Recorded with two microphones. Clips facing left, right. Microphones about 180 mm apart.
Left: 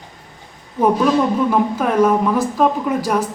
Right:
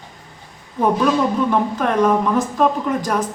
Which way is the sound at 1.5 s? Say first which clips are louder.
Left 1 dB; 5° left (ahead or behind).